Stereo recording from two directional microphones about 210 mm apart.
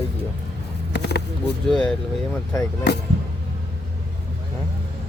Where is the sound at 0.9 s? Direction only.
55° left (ahead or behind).